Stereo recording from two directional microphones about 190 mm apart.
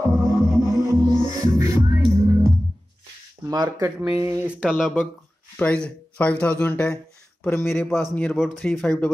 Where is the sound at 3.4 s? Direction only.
15° right (ahead or behind); by 9.1 s 5° left (ahead or behind).